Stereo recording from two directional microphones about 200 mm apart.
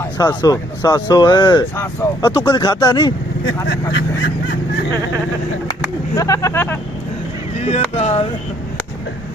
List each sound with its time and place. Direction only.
0.2 s speech: 20° left (ahead or behind)
3.4 s speech: 70° left (ahead or behind)
6.1 s speech: 15° left (ahead or behind)
7.7 s speech: 30° left (ahead or behind)